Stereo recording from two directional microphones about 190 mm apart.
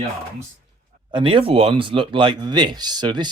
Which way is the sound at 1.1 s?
25° right (ahead or behind).